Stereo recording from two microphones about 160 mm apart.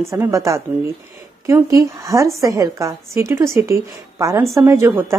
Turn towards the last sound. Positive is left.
turn(degrees=-15)  # may be behind; listen again after turning